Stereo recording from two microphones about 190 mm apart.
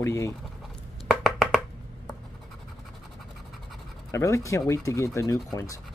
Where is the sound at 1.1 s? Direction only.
Centre (ahead or behind).